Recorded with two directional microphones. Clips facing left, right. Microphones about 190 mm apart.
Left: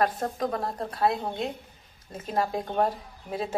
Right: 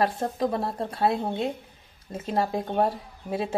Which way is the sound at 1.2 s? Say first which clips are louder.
Right 3 dB; 5° right (ahead or behind).